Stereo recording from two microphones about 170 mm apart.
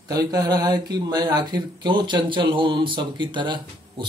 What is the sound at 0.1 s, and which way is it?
Speech, 20° right (ahead or behind).